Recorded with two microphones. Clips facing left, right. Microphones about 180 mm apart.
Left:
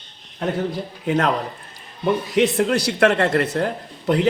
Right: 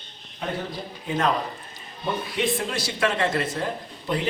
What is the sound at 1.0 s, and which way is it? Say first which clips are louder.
Speech: left 6 dB; 70° left (ahead or behind).